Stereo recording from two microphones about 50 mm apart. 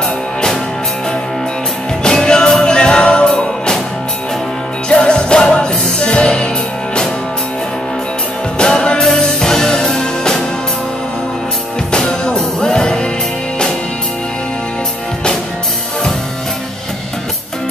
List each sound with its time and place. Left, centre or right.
2.0 s music: centre
4.8 s music: centre
8.5 s music: centre
11.9 s music: centre